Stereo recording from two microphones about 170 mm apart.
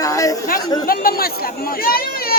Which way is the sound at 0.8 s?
60° left (ahead or behind).